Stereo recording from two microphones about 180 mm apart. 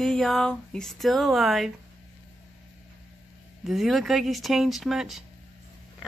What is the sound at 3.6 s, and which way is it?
A woman's voice, centre (ahead or behind).